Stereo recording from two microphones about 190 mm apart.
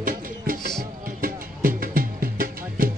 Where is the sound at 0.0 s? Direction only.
45° right (ahead or behind).